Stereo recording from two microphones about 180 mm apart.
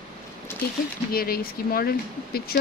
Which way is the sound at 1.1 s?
55° left (ahead or behind).